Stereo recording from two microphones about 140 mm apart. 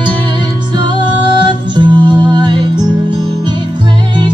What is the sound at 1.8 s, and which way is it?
Music, 35° right (ahead or behind).